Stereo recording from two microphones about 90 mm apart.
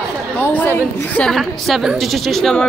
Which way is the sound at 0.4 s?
20° left (ahead or behind).